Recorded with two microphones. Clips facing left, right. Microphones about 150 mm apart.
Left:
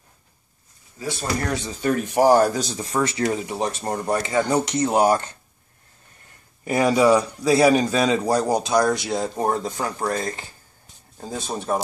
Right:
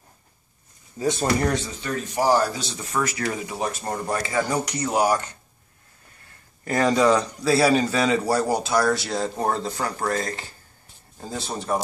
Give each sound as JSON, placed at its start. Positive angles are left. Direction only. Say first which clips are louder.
{"t": 1.8, "sound": "speech", "louder": "left 6 dB", "side_deg": 55}
{"t": 6.6, "sound": "a man's voice", "louder": "left 2 dB", "side_deg": 10}